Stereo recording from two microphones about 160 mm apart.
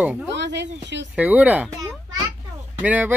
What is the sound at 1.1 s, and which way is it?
Speech, 10° right (ahead or behind).